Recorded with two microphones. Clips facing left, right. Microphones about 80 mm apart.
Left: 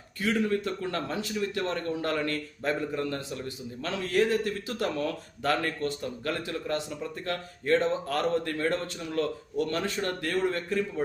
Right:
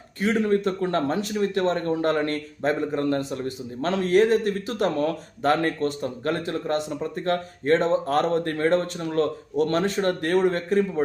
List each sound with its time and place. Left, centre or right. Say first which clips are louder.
0.2 s a man's voice: right 5 dB; right